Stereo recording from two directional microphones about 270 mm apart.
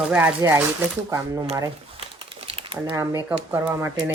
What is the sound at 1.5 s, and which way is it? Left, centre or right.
Crumpling, centre.